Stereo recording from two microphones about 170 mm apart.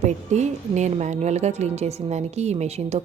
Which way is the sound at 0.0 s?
40° right (ahead or behind).